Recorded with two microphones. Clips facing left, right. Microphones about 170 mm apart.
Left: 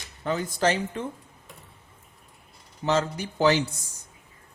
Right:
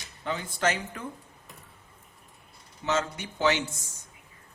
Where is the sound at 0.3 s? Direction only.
40° left (ahead or behind).